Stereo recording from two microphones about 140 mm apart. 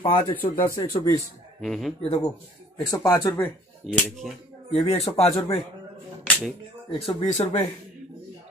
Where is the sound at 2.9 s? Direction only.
30° left (ahead or behind).